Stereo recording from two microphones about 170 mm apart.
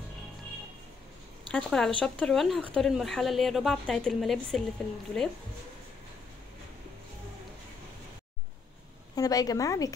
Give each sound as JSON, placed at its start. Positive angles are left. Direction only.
{"t": 1.5, "sound": "speech", "side_deg": 5}
{"t": 9.1, "sound": "a woman's voice", "side_deg": 20}